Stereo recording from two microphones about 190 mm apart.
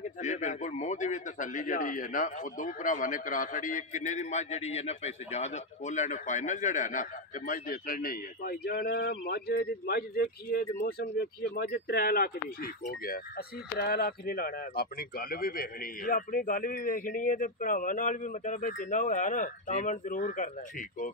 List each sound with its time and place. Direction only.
0.2 s a man's voice: 40° left (ahead or behind)